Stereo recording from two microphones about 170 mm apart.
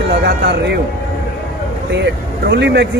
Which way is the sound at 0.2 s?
65° right (ahead or behind).